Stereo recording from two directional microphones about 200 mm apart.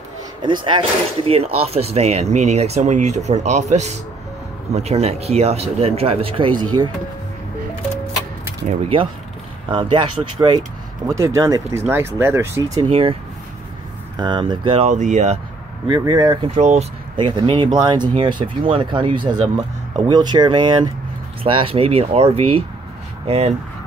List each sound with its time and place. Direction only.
0.4 s speech: 25° right (ahead or behind)
8.6 s speech: 30° right (ahead or behind)
12.9 s speech: 25° right (ahead or behind)
16.1 s speech: 20° right (ahead or behind)